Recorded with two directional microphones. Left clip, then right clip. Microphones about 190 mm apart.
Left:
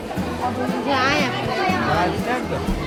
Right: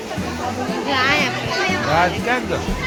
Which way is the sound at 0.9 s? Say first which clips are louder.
Right 2 dB; 50° left (ahead or behind).